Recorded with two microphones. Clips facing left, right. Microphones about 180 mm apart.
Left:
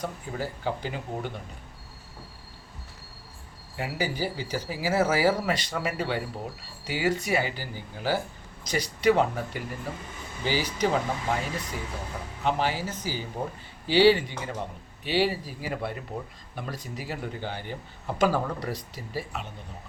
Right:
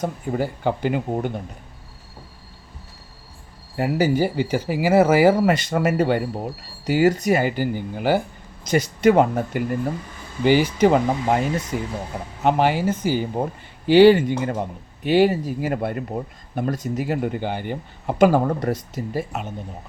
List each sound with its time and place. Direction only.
0.0 s speech: 50° right (ahead or behind)
3.8 s speech: 45° right (ahead or behind); by 8.2 s 60° right (ahead or behind)
8.6 s speech: 50° right (ahead or behind)